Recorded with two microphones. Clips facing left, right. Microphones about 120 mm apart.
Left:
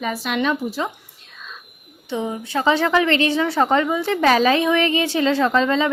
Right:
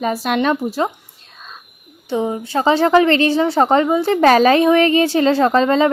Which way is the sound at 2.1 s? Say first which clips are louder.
Right 5 dB; 35° right (ahead or behind).